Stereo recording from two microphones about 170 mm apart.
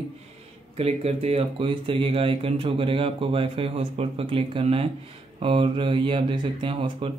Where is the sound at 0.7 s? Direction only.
35° right (ahead or behind).